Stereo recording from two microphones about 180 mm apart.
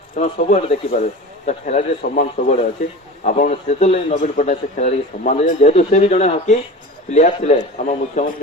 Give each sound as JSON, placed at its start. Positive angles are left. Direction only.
{"t": 0.2, "sound": "a man's voice", "side_deg": 45}